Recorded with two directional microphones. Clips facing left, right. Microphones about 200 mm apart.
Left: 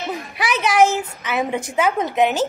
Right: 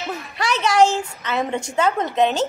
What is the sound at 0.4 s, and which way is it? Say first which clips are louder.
A woman's voice: even; 15° left (ahead or behind).